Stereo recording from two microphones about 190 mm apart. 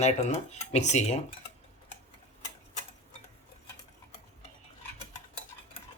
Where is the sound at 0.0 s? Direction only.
35° left (ahead or behind).